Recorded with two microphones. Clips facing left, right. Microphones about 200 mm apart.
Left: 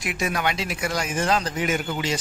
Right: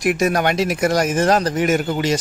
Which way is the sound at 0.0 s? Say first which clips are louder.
Right 8 dB; 45° right (ahead or behind).